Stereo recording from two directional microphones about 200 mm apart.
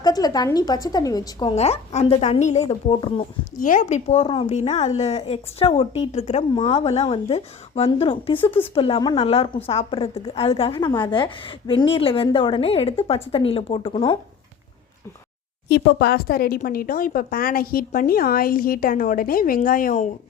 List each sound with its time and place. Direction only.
0.0 s a woman's voice: 20° left (ahead or behind)
15.7 s speech: 55° left (ahead or behind); by 20.1 s 40° left (ahead or behind)